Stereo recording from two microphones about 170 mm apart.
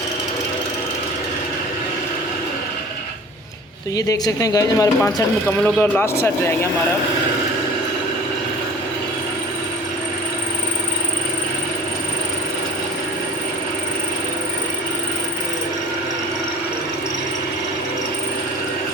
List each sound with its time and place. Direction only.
3.9 s speech: 20° left (ahead or behind)